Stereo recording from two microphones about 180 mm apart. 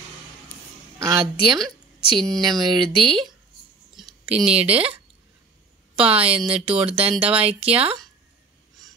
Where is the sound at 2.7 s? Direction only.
30° right (ahead or behind).